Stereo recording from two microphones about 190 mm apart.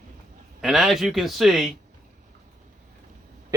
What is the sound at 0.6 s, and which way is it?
Speech, centre (ahead or behind).